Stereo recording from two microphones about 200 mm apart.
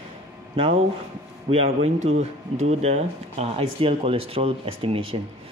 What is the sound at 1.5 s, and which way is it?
Speech, 30° right (ahead or behind).